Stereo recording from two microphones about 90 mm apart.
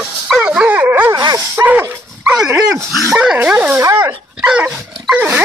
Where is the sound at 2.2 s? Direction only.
10° right (ahead or behind).